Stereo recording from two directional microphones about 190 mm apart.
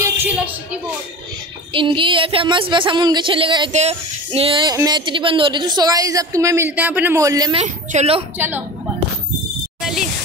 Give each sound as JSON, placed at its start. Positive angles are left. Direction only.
{"t": 0.0, "sound": "speech", "side_deg": -10}
{"t": 1.7, "sound": "speech", "side_deg": -25}
{"t": 7.5, "sound": "speech", "side_deg": -35}
{"t": 8.4, "sound": "a woman's voice", "side_deg": -10}